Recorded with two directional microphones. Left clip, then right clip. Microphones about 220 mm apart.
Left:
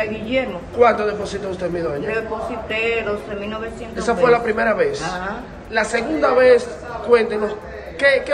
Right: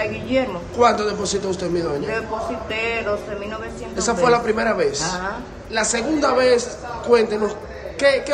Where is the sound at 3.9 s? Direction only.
15° right (ahead or behind).